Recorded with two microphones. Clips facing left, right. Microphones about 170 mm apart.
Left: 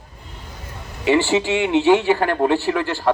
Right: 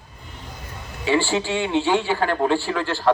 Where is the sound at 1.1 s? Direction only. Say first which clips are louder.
Left 4 dB; 20° left (ahead or behind).